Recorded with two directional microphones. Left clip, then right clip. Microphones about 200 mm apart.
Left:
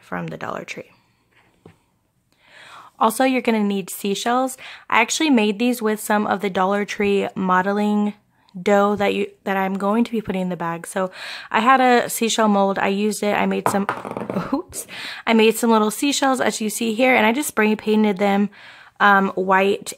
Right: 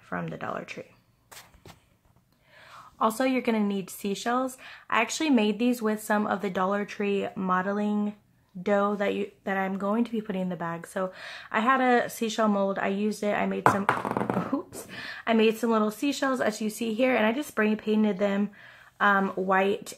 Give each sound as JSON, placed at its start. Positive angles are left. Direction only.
{"t": 0.1, "sound": "speech", "side_deg": 40}
{"t": 2.6, "sound": "a woman's voice", "side_deg": 40}